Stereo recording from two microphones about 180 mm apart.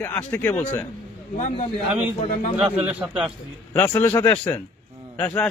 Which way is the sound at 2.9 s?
5° right (ahead or behind).